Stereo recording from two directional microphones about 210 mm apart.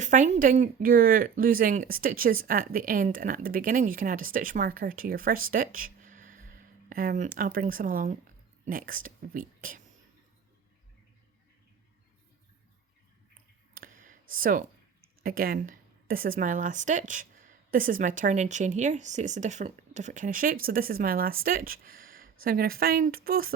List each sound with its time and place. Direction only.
0.0 s speech: 35° right (ahead or behind)
13.7 s a sound: 40° right (ahead or behind)
15.0 s speech: 45° right (ahead or behind)